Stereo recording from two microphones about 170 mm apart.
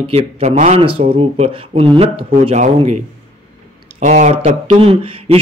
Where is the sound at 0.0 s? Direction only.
40° right (ahead or behind).